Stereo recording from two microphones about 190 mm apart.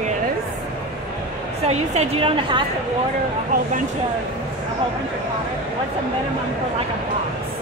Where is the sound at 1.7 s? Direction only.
30° right (ahead or behind).